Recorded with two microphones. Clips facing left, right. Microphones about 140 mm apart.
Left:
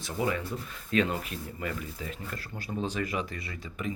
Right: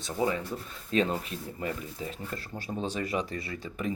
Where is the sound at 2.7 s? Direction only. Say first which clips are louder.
Left 1 dB; 15° right (ahead or behind).